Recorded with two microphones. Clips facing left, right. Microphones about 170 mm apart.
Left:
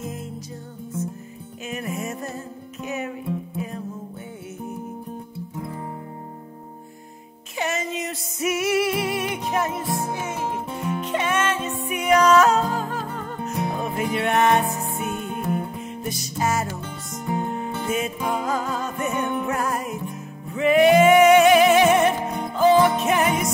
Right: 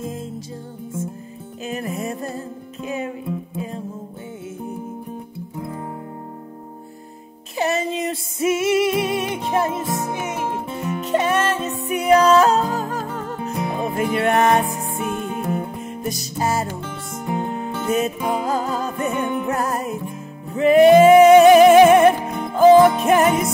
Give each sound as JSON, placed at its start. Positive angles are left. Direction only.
{"t": 1.6, "sound": "music", "side_deg": -35}
{"t": 7.5, "sound": "music", "side_deg": -35}
{"t": 11.0, "sound": "music", "side_deg": -40}
{"t": 16.6, "sound": "music", "side_deg": -55}
{"t": 17.8, "sound": "music", "side_deg": -40}
{"t": 19.1, "sound": "music", "side_deg": -50}
{"t": 19.4, "sound": "music", "side_deg": -35}